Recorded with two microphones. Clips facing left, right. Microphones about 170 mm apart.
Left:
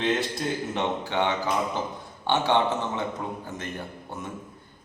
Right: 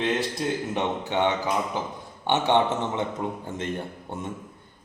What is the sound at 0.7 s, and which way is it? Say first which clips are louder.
A man's voice: right 1 dB; 20° right (ahead or behind).